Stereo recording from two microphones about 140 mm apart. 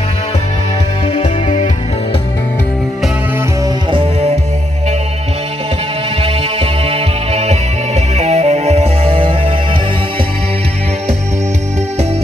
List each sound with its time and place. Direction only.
1.2 s music: 60° left (ahead or behind)
3.6 s music: 40° right (ahead or behind)
6.2 s music: 45° right (ahead or behind)